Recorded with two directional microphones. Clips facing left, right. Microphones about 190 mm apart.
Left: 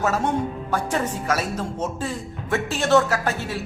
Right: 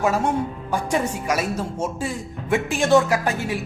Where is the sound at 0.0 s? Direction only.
10° right (ahead or behind).